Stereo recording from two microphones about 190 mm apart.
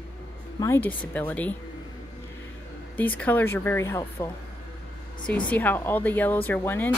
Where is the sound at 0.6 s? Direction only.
10° left (ahead or behind).